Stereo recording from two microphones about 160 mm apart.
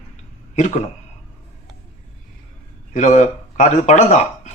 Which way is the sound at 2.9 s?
50° left (ahead or behind).